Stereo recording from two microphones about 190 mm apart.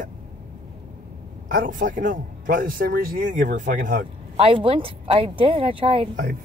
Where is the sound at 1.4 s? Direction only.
45° right (ahead or behind).